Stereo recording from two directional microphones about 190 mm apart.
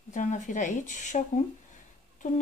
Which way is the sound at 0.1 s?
40° left (ahead or behind).